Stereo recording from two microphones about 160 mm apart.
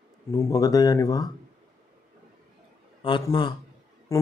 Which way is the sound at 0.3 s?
20° left (ahead or behind).